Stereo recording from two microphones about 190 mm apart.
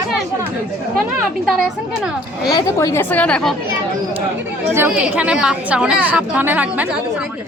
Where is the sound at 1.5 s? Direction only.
5° right (ahead or behind).